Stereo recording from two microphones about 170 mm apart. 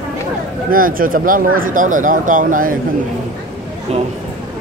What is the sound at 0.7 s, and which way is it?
Speech, 55° right (ahead or behind).